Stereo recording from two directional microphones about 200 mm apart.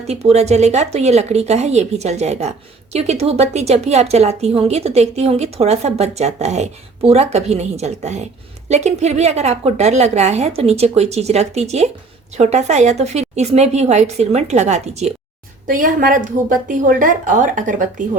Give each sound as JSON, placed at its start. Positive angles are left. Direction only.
{"t": 0.1, "sound": "a woman's voice", "side_deg": -30}